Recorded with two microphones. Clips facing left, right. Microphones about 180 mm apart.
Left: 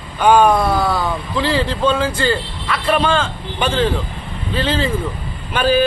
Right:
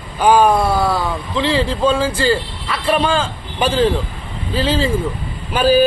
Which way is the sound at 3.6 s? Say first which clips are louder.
Right 2 dB; 35° right (ahead or behind).